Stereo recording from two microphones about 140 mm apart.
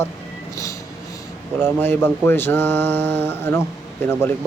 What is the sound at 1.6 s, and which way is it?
Speech, 15° left (ahead or behind).